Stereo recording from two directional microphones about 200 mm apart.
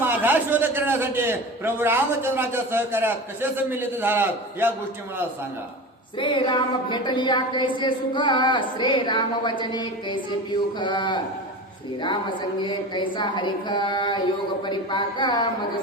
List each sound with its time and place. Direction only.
0.2 s a man's voice: 10° right (ahead or behind)
6.1 s a woman's voice: 25° left (ahead or behind)